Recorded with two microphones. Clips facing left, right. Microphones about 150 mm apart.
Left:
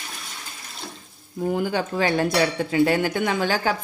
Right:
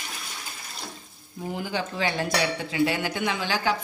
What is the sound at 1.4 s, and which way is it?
Cutlery, 50° left (ahead or behind).